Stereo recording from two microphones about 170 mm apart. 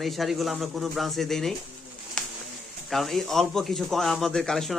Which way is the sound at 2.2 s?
5° left (ahead or behind).